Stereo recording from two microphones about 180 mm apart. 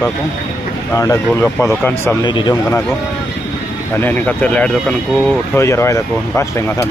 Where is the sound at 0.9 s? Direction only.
20° left (ahead or behind).